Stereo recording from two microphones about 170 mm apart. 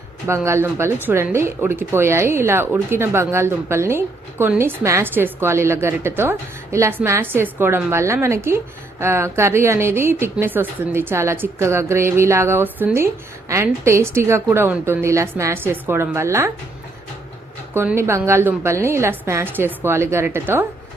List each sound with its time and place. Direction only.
0.3 s speech: 15° right (ahead or behind)
17.7 s speech: 15° right (ahead or behind)